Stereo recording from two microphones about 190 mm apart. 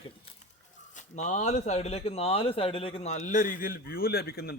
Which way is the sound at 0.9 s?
40° left (ahead or behind).